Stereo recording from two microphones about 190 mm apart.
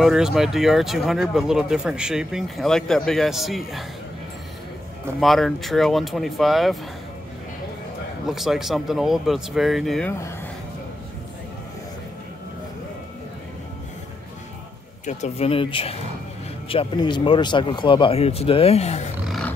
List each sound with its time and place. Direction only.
0.0 s speech: centre (ahead or behind)
5.2 s speech: centre (ahead or behind)
8.3 s speech: centre (ahead or behind)
15.0 s speech: 35° left (ahead or behind)
19.2 s music: centre (ahead or behind)